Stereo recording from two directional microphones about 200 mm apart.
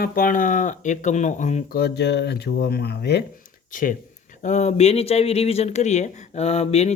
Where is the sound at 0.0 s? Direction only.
45° left (ahead or behind).